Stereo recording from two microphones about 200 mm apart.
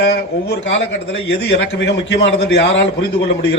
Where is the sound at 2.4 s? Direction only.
60° left (ahead or behind).